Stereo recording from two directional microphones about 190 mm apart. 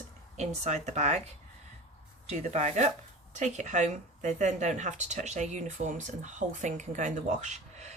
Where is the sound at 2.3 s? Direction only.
35° right (ahead or behind).